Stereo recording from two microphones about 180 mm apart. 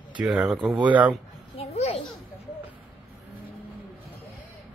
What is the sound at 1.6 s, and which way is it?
Children playing, 35° left (ahead or behind).